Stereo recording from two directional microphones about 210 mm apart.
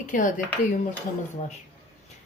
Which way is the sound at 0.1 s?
40° left (ahead or behind).